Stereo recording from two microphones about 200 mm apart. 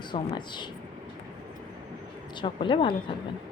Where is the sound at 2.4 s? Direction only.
25° left (ahead or behind).